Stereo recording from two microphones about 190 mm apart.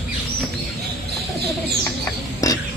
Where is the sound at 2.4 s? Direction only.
20° left (ahead or behind).